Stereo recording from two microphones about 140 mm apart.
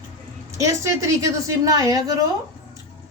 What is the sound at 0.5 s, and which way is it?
A woman's voice, 20° right (ahead or behind).